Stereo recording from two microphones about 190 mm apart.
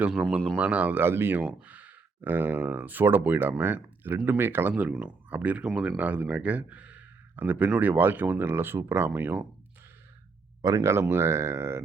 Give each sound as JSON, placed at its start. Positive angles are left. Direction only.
{"t": 0.0, "sound": "a man's voice", "side_deg": -5}
{"t": 10.6, "sound": "a man's voice", "side_deg": -15}